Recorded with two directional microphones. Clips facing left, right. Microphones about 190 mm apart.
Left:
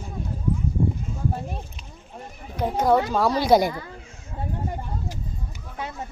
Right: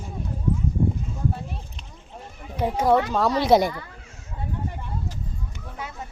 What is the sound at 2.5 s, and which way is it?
Speech, 5° right (ahead or behind).